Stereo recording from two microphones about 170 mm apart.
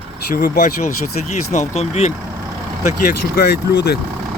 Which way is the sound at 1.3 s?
40° left (ahead or behind).